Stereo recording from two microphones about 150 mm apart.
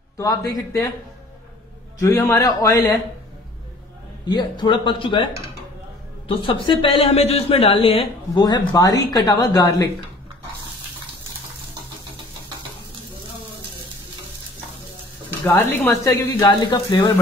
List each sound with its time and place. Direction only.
0.2 s a man's voice: 20° left (ahead or behind)
2.0 s a man's voice: 20° left (ahead or behind)
4.3 s speech: 30° left (ahead or behind)
15.4 s speech: 15° left (ahead or behind)
16.4 s speech: 30° left (ahead or behind)